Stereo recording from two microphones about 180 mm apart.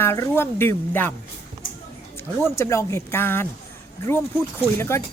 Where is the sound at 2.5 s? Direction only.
15° left (ahead or behind).